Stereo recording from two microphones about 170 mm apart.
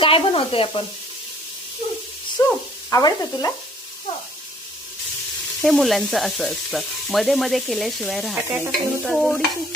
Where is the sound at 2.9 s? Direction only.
20° left (ahead or behind).